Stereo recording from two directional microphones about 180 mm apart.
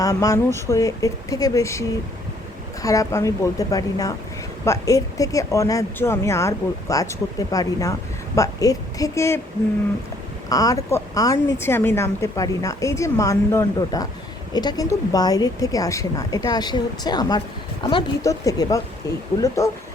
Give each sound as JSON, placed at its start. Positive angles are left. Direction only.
{"t": 0.0, "sound": "a woman's voice", "side_deg": 20}
{"t": 2.8, "sound": "a woman's voice", "side_deg": 20}
{"t": 10.5, "sound": "a woman's voice", "side_deg": 20}